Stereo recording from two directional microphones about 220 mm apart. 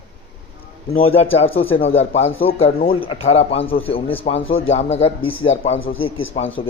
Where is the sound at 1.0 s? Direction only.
25° left (ahead or behind).